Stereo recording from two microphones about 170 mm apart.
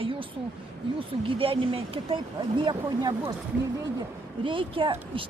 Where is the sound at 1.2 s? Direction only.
35° right (ahead or behind).